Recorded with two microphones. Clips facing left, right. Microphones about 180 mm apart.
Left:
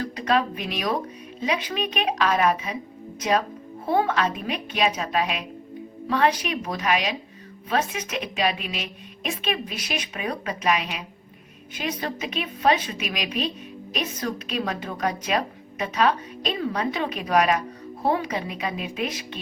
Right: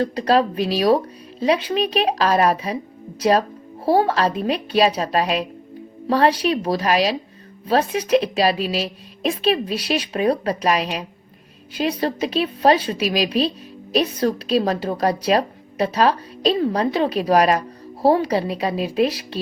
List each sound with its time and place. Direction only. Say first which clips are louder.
0.0 s a woman's voice: right 6 dB; 35° right (ahead or behind)